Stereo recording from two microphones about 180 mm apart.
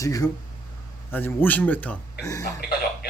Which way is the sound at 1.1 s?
10° left (ahead or behind).